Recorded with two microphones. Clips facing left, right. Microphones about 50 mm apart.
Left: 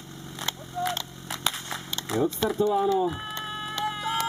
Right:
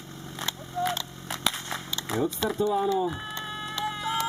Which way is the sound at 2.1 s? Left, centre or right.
Centre.